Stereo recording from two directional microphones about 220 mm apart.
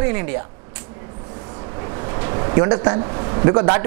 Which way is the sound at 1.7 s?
20° right (ahead or behind).